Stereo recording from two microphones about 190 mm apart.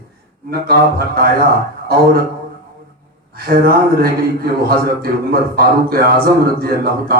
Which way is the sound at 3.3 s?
55° right (ahead or behind).